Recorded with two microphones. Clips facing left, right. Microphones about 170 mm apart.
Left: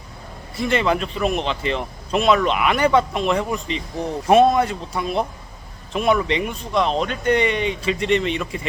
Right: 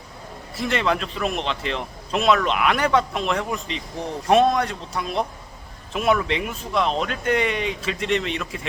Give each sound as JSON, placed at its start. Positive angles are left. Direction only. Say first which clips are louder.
{"t": 0.5, "sound": "speech", "louder": "left 3 dB", "side_deg": 0}